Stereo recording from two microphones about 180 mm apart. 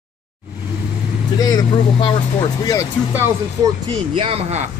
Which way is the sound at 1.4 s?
20° left (ahead or behind).